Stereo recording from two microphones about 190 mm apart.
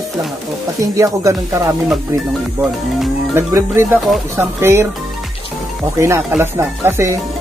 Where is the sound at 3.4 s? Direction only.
15° right (ahead or behind).